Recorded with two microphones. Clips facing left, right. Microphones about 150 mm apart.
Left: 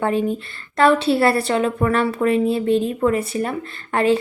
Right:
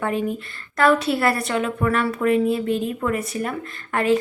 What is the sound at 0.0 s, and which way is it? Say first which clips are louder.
A woman's voice: left 4 dB; 30° left (ahead or behind).